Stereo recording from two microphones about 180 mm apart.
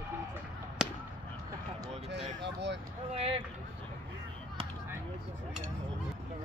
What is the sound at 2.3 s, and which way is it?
Speech, 75° right (ahead or behind).